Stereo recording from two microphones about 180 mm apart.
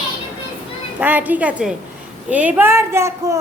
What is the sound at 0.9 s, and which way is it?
A woman's voice, 10° right (ahead or behind).